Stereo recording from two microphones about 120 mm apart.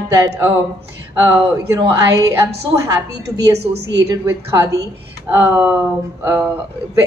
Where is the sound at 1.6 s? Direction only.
25° right (ahead or behind).